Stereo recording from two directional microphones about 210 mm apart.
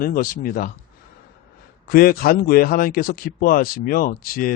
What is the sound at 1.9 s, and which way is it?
Speech, 45° left (ahead or behind).